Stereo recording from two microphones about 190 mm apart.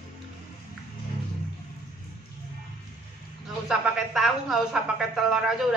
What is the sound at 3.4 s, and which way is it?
A woman's voice, centre (ahead or behind).